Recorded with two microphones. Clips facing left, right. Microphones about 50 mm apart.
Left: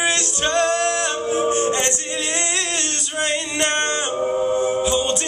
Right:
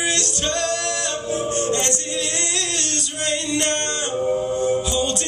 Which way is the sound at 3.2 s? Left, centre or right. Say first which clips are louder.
Even; left.